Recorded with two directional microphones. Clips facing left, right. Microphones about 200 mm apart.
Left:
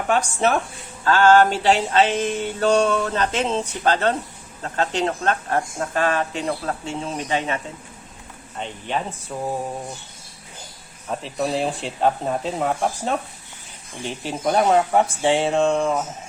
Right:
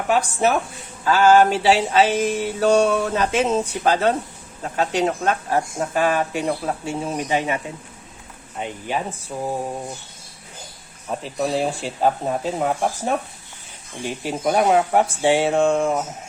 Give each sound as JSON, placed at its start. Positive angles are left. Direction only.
{"t": 0.1, "sound": "mantra", "side_deg": -10}
{"t": 8.5, "sound": "speech", "side_deg": -10}
{"t": 11.1, "sound": "speech", "side_deg": 0}
{"t": 14.0, "sound": "mantra", "side_deg": -10}